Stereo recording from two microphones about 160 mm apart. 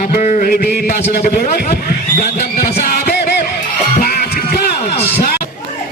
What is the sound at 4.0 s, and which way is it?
Music, 70° left (ahead or behind).